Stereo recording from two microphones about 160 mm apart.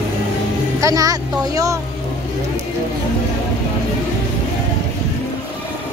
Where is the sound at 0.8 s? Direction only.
20° right (ahead or behind).